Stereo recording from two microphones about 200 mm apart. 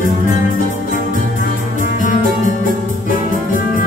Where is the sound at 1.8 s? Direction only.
40° left (ahead or behind).